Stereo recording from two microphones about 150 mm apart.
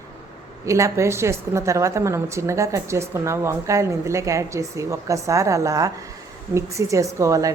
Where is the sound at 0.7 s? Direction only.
20° right (ahead or behind).